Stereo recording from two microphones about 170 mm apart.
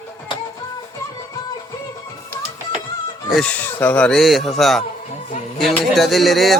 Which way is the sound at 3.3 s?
5° left (ahead or behind).